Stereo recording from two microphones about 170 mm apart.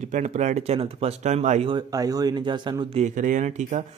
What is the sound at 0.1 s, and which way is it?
Speech, 45° right (ahead or behind).